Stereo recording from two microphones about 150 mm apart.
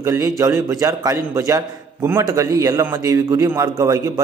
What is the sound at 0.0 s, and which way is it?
A man's voice, 20° right (ahead or behind).